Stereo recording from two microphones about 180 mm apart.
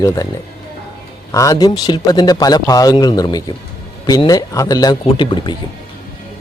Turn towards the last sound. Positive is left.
turn(degrees=25)  # may be behind; listen again after turning